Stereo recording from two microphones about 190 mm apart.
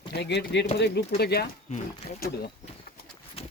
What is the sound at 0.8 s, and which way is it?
Speech, 60° left (ahead or behind).